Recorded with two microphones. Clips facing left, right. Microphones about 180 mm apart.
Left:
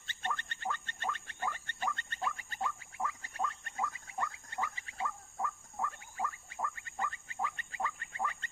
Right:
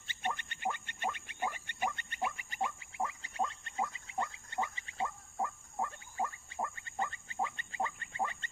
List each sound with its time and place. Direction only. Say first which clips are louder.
0.1 s frog: right 1 dB; 15° right (ahead or behind)